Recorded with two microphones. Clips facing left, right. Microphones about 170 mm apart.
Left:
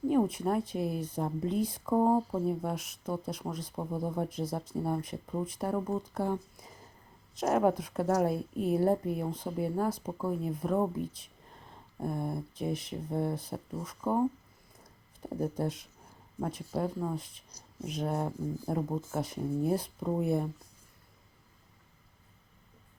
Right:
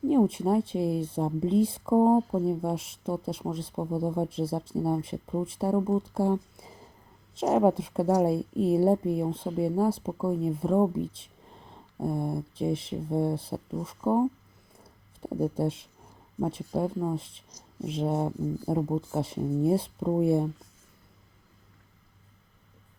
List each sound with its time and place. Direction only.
0.1 s speech: 25° right (ahead or behind)